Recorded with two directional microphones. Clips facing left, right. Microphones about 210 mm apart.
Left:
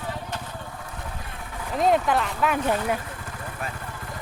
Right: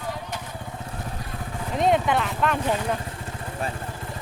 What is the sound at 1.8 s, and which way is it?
Speech, centre (ahead or behind).